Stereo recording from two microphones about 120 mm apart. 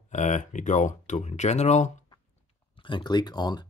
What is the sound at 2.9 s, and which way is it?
Speech, 40° left (ahead or behind).